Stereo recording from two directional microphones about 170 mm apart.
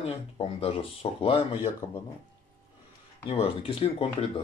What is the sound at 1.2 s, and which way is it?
Speech, 30° left (ahead or behind).